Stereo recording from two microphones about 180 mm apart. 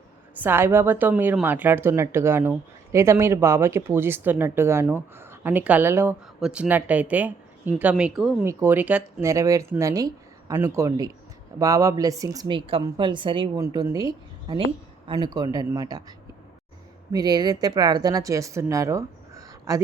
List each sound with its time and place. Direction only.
0.3 s a woman's voice: 10° right (ahead or behind)